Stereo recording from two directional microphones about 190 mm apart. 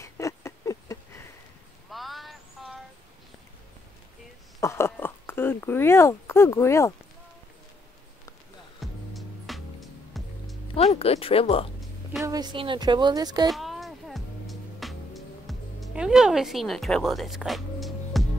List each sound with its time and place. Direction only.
0.0 s a sound: 15° left (ahead or behind)
1.9 s a sound: centre (ahead or behind)
4.6 s speech: 15° left (ahead or behind)
8.7 s music: centre (ahead or behind)
10.7 s speech: 30° left (ahead or behind)
12.3 s a woman's voice: 20° right (ahead or behind)
13.5 s music: centre (ahead or behind)